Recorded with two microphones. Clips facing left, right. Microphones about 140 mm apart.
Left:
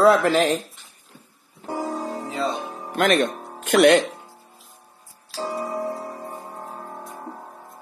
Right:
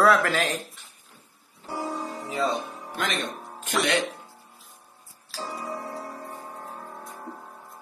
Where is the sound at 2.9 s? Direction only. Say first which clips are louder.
Left 12 dB; 55° left (ahead or behind).